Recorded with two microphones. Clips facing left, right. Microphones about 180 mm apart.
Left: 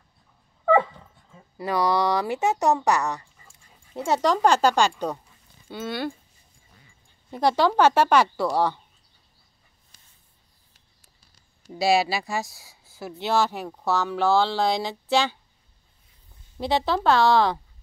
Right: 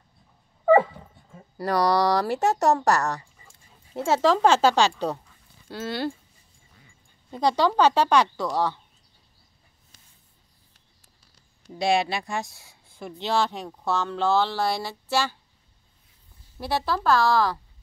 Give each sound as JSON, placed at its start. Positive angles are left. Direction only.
{"t": 0.7, "sound": "dog", "side_deg": -10}
{"t": 1.6, "sound": "speech", "side_deg": 0}
{"t": 7.7, "sound": "speech", "side_deg": 10}
{"t": 11.7, "sound": "speech", "side_deg": 5}
{"t": 16.5, "sound": "speech", "side_deg": 20}